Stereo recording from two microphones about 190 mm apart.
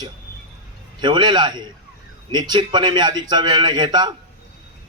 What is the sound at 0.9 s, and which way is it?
A man's voice, 25° right (ahead or behind).